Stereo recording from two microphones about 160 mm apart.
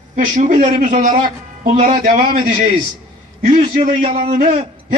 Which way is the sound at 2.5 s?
50° right (ahead or behind).